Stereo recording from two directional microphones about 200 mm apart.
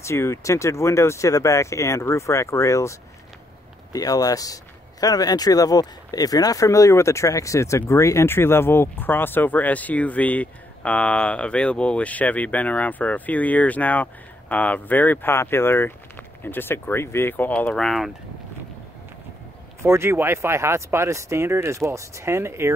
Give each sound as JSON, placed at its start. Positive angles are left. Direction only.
{"t": 0.0, "sound": "speech", "side_deg": 15}
{"t": 19.8, "sound": "speech", "side_deg": -10}